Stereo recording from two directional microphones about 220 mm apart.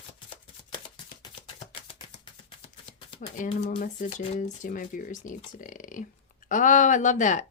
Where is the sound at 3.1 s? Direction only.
35° left (ahead or behind).